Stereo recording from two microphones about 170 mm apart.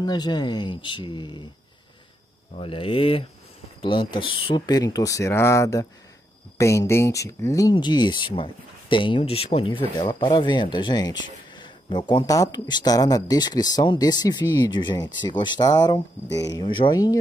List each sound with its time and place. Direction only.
0.0 s speech: 25° left (ahead or behind)
2.5 s speech: 30° left (ahead or behind)